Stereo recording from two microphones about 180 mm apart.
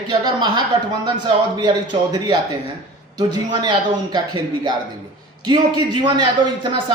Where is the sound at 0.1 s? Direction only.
25° right (ahead or behind).